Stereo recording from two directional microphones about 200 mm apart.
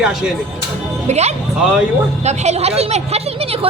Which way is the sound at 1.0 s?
35° right (ahead or behind).